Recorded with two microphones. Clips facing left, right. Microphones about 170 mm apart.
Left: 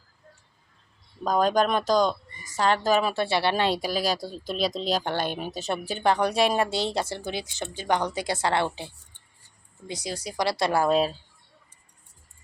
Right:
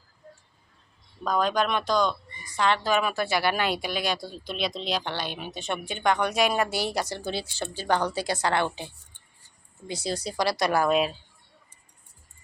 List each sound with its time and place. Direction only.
1.2 s speech: 40° left (ahead or behind)
9.8 s a woman's voice: 15° left (ahead or behind)
10.4 s speech: 25° left (ahead or behind)